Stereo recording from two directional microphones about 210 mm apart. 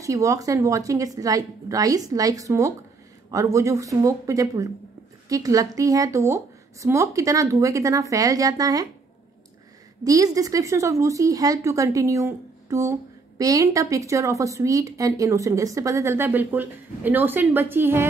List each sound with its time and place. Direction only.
0.0 s speech: 15° right (ahead or behind)
10.0 s speech: 15° right (ahead or behind)